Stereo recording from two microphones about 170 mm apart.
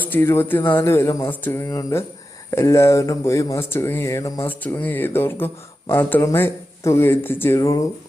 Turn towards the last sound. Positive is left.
turn(degrees=20)  # may be behind; listen again after turning